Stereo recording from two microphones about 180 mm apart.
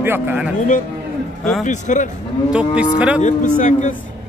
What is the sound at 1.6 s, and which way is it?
Speech, 45° left (ahead or behind).